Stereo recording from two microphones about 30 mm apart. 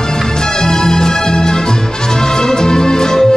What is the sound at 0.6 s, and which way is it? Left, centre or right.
Music, left.